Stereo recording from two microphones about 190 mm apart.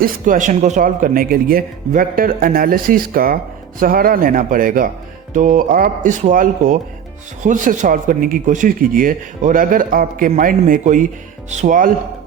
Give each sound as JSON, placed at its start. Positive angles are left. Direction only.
{"t": 0.0, "sound": "speech", "side_deg": -45}